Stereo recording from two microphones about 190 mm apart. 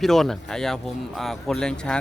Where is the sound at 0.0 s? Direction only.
Centre (ahead or behind).